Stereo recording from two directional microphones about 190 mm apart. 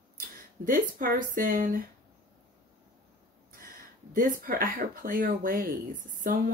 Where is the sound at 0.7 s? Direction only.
45° right (ahead or behind).